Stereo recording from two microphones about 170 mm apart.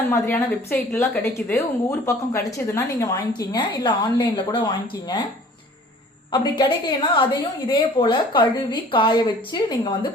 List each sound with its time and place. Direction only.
0.1 s a woman's voice: 15° left (ahead or behind)
6.3 s a woman's voice: 25° left (ahead or behind)